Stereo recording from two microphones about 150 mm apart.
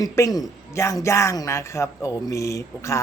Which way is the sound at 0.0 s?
25° left (ahead or behind).